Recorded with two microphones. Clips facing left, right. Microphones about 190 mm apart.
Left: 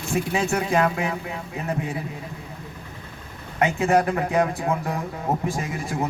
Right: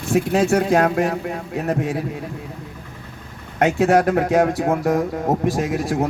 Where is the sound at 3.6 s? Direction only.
75° right (ahead or behind).